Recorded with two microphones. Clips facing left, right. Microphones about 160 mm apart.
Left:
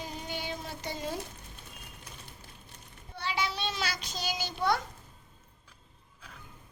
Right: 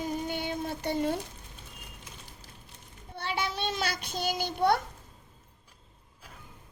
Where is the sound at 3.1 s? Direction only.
55° right (ahead or behind).